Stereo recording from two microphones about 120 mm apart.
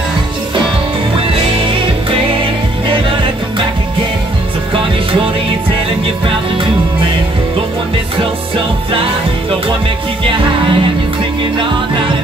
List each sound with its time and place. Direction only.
1.2 s music: 45° right (ahead or behind)
10.2 s music: 45° right (ahead or behind)